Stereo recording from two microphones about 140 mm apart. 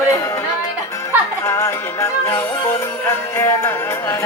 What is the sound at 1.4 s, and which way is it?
Music, 20° left (ahead or behind).